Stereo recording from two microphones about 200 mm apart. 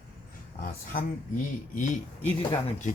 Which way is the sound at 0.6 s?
45° left (ahead or behind).